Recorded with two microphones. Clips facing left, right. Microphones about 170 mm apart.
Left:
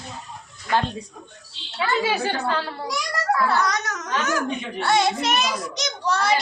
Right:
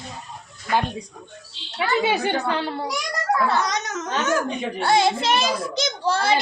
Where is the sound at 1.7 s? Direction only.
20° right (ahead or behind).